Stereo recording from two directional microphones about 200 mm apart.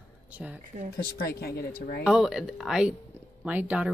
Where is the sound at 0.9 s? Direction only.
50° left (ahead or behind).